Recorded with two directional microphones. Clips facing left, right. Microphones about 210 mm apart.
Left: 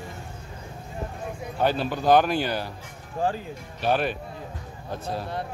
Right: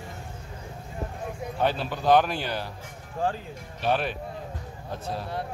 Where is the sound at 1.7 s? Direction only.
Centre (ahead or behind).